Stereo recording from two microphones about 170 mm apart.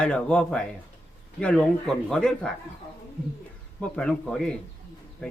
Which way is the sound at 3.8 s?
5° left (ahead or behind).